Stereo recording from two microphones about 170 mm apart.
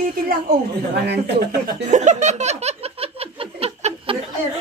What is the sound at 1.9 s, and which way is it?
Laughter, 45° right (ahead or behind).